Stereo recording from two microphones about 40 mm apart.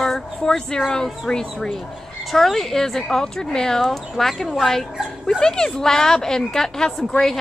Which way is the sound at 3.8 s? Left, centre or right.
Centre.